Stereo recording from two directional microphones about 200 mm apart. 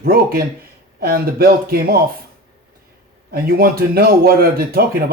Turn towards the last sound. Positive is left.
turn(degrees=-50)  # may be behind; listen again after turning